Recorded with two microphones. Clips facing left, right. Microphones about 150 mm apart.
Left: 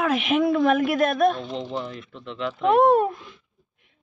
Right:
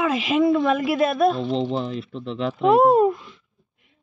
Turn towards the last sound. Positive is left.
turn(degrees=-5)  # may be behind; listen again after turning